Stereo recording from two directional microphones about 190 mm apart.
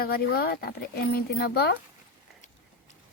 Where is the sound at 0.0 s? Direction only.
55° left (ahead or behind).